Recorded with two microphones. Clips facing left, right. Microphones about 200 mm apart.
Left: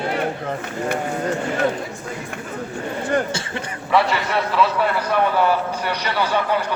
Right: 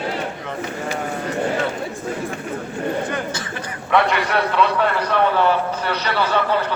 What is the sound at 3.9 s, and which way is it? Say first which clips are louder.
A man's voice: right 1 dB; centre (ahead or behind).